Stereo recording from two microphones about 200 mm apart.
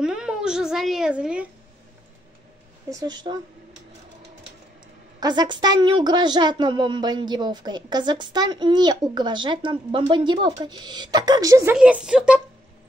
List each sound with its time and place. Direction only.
0.0 s a woman's voice: 5° right (ahead or behind)
2.9 s speech: 20° right (ahead or behind)
5.2 s speech: 20° right (ahead or behind)
11.7 s a woman's voice: 5° right (ahead or behind)